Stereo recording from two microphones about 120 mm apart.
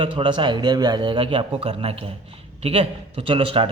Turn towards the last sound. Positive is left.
turn(degrees=-50)  # may be behind; listen again after turning